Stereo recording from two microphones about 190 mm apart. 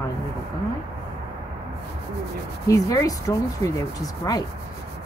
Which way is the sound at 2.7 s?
15° left (ahead or behind).